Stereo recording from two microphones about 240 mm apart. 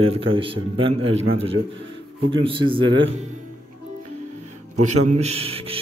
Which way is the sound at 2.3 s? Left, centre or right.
Right.